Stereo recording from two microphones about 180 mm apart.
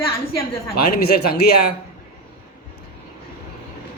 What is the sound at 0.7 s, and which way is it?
Speech, 60° left (ahead or behind).